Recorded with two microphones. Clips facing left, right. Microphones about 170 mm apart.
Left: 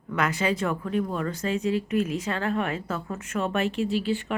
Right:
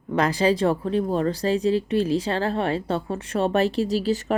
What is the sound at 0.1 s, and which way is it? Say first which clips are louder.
Speech: right 5 dB; 35° right (ahead or behind).